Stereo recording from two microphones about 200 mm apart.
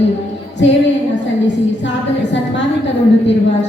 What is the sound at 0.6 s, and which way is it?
Speech, 65° left (ahead or behind).